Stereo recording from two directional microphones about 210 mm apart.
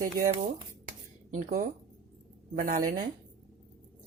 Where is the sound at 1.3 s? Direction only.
40° right (ahead or behind).